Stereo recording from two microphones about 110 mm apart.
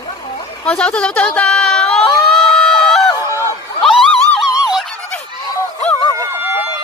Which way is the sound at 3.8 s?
10° left (ahead or behind).